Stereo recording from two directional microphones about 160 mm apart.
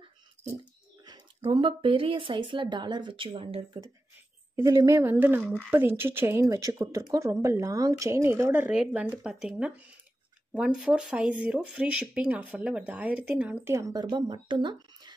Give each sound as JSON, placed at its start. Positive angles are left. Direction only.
{"t": 1.0, "sound": "speech", "side_deg": -25}
{"t": 4.6, "sound": "speech", "side_deg": -20}
{"t": 13.7, "sound": "speech", "side_deg": -20}